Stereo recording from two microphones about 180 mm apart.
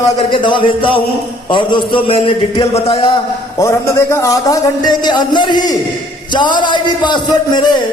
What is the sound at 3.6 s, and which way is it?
A man's voice, 15° left (ahead or behind).